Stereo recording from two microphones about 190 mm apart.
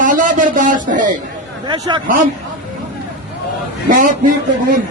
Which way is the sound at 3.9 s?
45° right (ahead or behind).